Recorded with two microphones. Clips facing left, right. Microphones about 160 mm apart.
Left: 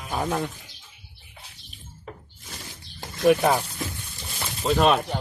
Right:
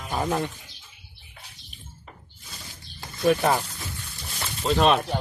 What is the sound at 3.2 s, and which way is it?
A man's voice, 10° left (ahead or behind).